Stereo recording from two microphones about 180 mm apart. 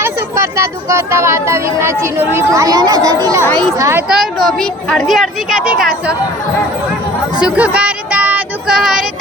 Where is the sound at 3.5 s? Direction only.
5° left (ahead or behind).